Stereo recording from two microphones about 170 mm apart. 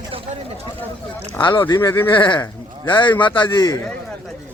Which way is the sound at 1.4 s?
25° left (ahead or behind).